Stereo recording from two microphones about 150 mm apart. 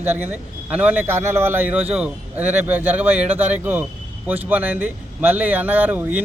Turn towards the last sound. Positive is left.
turn(degrees=-10)  # may be behind; listen again after turning